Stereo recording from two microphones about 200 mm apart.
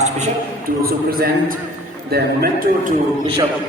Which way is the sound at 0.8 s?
50° right (ahead or behind).